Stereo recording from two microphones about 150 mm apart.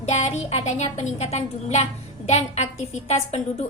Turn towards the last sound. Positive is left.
turn(degrees=45)  # may be behind; listen again after turning